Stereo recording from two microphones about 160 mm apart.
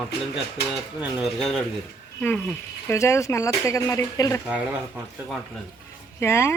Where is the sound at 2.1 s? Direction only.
10° left (ahead or behind).